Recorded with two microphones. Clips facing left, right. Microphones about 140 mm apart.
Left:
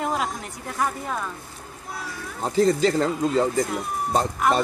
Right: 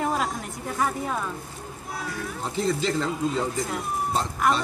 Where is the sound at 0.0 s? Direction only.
Centre (ahead or behind).